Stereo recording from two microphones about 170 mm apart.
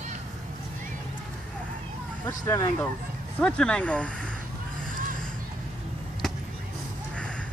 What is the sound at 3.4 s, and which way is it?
Speech, 5° left (ahead or behind).